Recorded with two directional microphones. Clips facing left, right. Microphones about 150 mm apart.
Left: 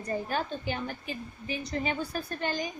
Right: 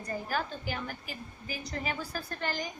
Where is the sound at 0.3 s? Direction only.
25° left (ahead or behind).